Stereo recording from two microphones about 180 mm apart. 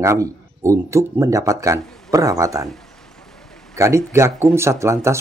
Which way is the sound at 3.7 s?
15° right (ahead or behind).